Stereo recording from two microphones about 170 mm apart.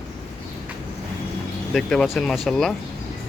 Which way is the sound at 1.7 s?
5° left (ahead or behind).